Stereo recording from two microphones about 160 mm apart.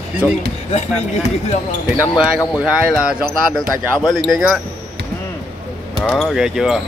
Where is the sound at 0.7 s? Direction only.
45° left (ahead or behind).